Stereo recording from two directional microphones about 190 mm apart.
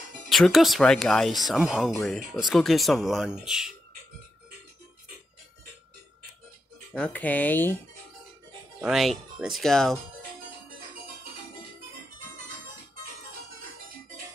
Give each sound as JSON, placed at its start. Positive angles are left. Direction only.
{"t": 0.3, "sound": "speech", "side_deg": 0}
{"t": 6.9, "sound": "speech", "side_deg": 5}
{"t": 8.8, "sound": "speech", "side_deg": 0}